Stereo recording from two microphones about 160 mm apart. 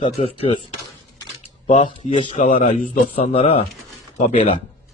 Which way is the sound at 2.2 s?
35° left (ahead or behind).